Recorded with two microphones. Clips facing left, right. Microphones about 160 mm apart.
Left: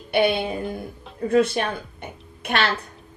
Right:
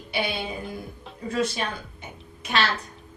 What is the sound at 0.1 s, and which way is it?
A woman's voice, 60° left (ahead or behind).